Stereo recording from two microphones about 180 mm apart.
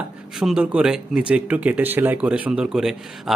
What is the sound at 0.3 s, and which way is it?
Speech, centre (ahead or behind).